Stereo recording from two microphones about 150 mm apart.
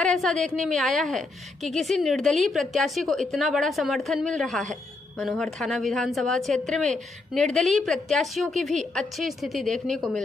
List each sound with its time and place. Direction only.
0.0 s a woman's voice: 5° left (ahead or behind)